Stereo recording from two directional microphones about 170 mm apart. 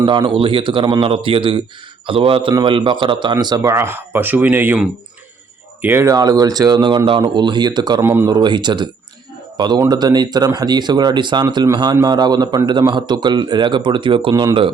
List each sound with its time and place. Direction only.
0.0 s speech: 30° right (ahead or behind)
8.0 s speech: 15° right (ahead or behind)
8.3 s a man's voice: 25° right (ahead or behind)